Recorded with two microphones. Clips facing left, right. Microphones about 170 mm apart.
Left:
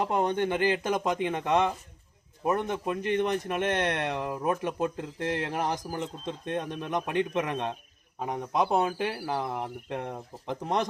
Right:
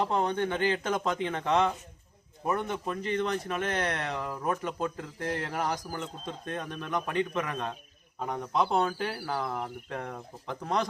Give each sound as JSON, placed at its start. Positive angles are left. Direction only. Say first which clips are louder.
{"t": 0.0, "sound": "speech", "louder": "left 1 dB", "side_deg": 15}